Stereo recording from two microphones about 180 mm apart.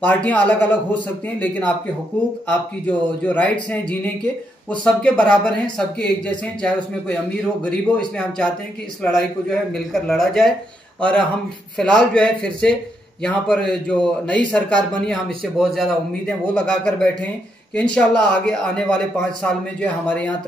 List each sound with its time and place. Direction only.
0.0 s speech: 10° left (ahead or behind)
2.9 s speech: 10° left (ahead or behind)